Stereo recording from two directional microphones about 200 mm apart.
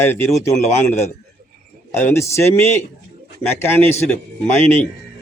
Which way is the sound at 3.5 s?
10° left (ahead or behind).